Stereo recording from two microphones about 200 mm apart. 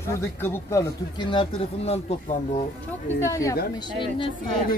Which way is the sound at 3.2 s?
15° left (ahead or behind).